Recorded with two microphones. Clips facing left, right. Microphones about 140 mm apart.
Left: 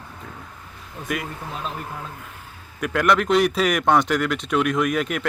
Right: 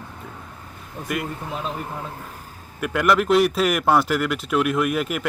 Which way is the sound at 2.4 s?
40° right (ahead or behind).